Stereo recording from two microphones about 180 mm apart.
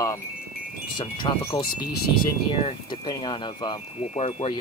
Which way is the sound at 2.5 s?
25° left (ahead or behind).